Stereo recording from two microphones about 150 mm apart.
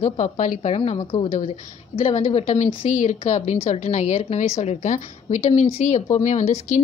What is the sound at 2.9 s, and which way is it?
A woman's voice, 55° left (ahead or behind).